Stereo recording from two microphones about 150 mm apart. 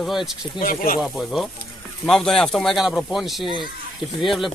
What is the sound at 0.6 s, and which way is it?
Speech, 70° left (ahead or behind).